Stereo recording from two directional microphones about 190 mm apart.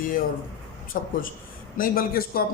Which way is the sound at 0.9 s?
45° left (ahead or behind).